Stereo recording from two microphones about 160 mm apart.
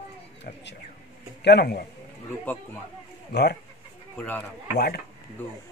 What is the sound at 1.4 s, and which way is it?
Speech, 85° left.